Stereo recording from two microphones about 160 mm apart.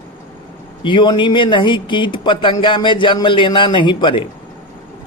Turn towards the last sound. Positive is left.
turn(degrees=30)  # may be behind; listen again after turning